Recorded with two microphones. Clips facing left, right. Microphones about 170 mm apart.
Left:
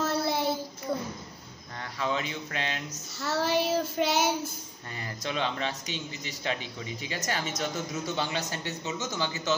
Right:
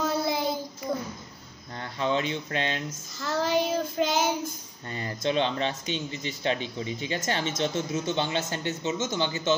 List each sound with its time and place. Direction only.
0.0 s child singing: centre (ahead or behind)
1.8 s speech: 30° right (ahead or behind)
3.2 s child singing: 5° left (ahead or behind)
4.9 s speech: 30° right (ahead or behind)